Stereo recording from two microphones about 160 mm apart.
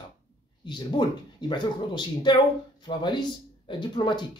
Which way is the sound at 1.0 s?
30° left (ahead or behind).